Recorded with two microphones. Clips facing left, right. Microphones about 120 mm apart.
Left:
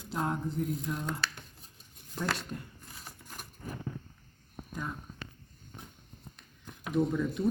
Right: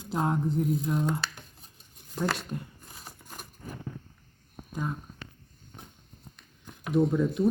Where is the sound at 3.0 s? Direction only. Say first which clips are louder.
Right 3 dB; 20° right (ahead or behind).